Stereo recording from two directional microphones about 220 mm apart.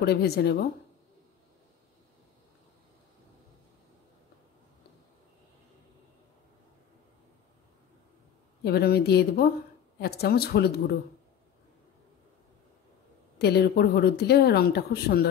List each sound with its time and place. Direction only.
0.0 s speech: 45° left (ahead or behind)
8.6 s speech: 45° left (ahead or behind)
13.4 s speech: 45° left (ahead or behind)